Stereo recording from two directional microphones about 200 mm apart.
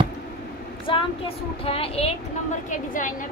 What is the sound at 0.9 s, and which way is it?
Speech, 25° left (ahead or behind).